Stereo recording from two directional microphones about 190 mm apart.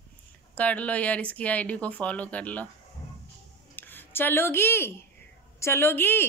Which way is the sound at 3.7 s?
10° left (ahead or behind).